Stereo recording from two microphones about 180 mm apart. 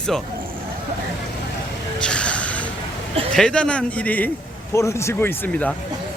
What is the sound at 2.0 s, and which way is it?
A man's voice, 5° left (ahead or behind).